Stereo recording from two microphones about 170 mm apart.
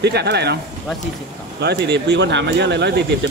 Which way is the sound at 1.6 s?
80° right.